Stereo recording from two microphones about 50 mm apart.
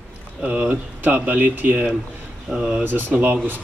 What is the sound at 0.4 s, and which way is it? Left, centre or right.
Speech, right.